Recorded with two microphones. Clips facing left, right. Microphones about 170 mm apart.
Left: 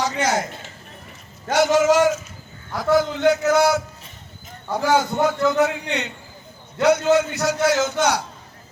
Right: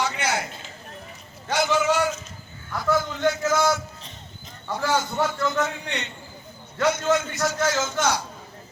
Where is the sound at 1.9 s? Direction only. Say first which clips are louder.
Left 6 dB; 40° left (ahead or behind).